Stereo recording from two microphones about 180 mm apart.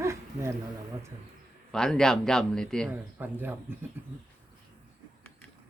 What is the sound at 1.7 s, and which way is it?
Speech, 5° left (ahead or behind).